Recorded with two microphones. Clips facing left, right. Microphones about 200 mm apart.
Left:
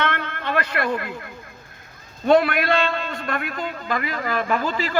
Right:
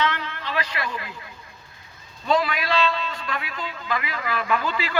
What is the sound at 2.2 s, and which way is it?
A man's voice, 60° left (ahead or behind).